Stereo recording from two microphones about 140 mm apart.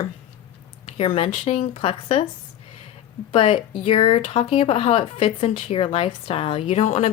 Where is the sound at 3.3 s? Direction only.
40° left (ahead or behind).